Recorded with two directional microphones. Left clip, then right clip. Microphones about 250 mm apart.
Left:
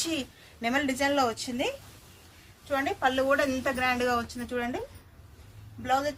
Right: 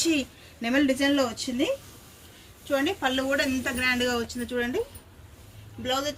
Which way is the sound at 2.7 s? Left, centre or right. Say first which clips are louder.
Right 1 dB; left.